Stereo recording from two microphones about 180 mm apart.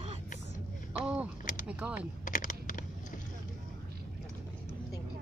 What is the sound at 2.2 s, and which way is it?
Typing, 45° left (ahead or behind).